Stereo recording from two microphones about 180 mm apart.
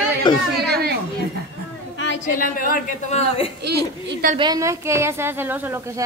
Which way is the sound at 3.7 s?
65° right (ahead or behind).